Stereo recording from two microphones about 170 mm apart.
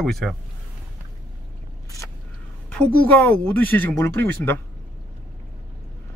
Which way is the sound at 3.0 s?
10° left (ahead or behind).